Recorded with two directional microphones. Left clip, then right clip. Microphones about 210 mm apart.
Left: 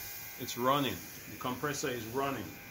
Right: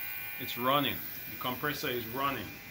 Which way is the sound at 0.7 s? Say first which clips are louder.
Right 1 dB; 30° left (ahead or behind).